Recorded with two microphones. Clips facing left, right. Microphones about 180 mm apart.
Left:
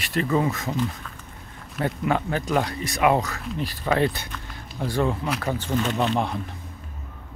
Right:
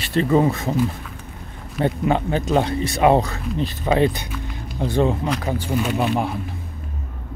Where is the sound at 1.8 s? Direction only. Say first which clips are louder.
Right 4 dB; 25° right (ahead or behind).